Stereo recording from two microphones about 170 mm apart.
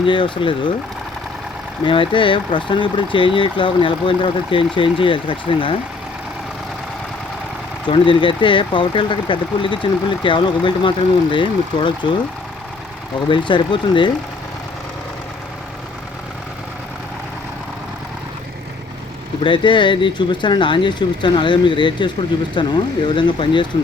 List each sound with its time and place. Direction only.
0.0 s speech: 30° left (ahead or behind)
1.8 s speech: 30° left (ahead or behind)
7.9 s speech: 30° left (ahead or behind)
13.2 s speech: 30° left (ahead or behind)
19.4 s speech: 30° left (ahead or behind)